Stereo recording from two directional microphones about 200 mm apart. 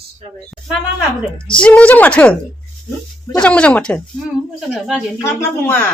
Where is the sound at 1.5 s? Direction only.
5° left (ahead or behind).